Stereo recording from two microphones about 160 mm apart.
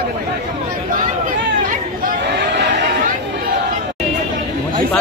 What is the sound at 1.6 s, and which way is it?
Chatter, 55° right (ahead or behind).